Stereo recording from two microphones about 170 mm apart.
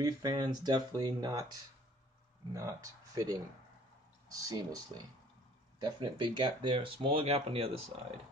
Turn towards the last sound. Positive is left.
turn(degrees=-35)  # may be behind; listen again after turning